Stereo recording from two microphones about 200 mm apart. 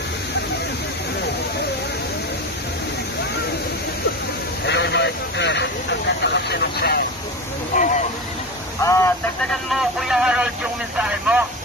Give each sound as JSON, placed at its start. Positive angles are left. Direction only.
{"t": 4.6, "sound": "vehicle", "side_deg": 60}
{"t": 7.7, "sound": "speech", "side_deg": 40}
{"t": 8.8, "sound": "speech", "side_deg": 15}
{"t": 9.5, "sound": "speech", "side_deg": 0}